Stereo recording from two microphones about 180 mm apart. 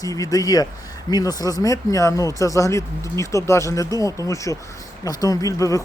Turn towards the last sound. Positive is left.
turn(degrees=20)  # may be behind; listen again after turning